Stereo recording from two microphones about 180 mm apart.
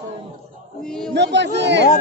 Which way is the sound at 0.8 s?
Centre (ahead or behind).